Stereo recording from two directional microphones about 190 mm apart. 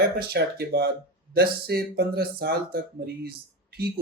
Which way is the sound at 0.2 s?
55° right (ahead or behind).